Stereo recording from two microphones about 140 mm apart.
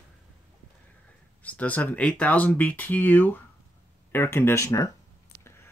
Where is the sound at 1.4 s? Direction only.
10° left (ahead or behind).